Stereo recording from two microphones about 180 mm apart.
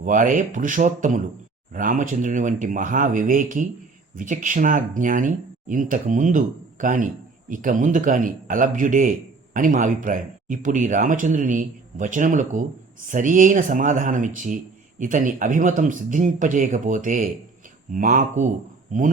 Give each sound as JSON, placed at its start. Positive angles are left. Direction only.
{"t": 0.0, "sound": "a man's voice", "side_deg": -45}